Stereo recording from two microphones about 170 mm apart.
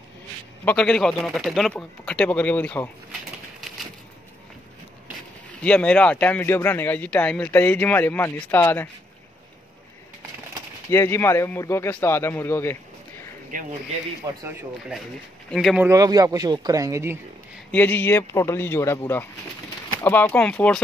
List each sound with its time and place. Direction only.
0.7 s speech: 5° left (ahead or behind)
5.6 s speech: 5° left (ahead or behind)
10.9 s speech: 15° left (ahead or behind)
13.5 s speech: 50° right (ahead or behind)
14.2 s speech: 20° right (ahead or behind)
15.5 s speech: centre (ahead or behind)
15.8 s speech: 20° right (ahead or behind)
17.6 s speech: 10° left (ahead or behind)